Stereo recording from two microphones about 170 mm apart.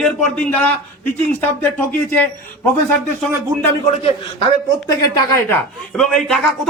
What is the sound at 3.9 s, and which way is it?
Speech, 35° left (ahead or behind).